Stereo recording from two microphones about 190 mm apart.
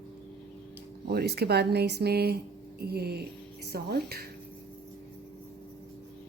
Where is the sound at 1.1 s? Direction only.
55° right (ahead or behind).